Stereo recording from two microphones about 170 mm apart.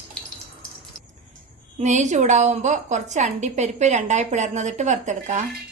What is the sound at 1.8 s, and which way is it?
A woman's voice, 45° right (ahead or behind).